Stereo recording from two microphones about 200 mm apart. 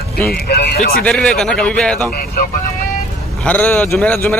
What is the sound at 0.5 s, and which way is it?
Speech, 50° left (ahead or behind).